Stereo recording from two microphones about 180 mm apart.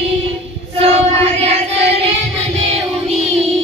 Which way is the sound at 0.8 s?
35° right (ahead or behind).